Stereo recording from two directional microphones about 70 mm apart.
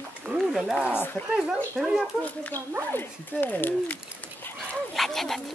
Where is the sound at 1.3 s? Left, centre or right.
Centre.